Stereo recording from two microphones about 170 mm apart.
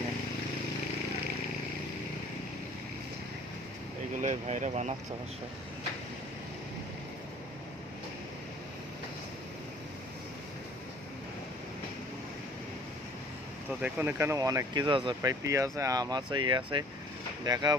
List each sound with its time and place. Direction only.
4.2 s speech: 45° right (ahead or behind)
13.7 s speech: 10° right (ahead or behind)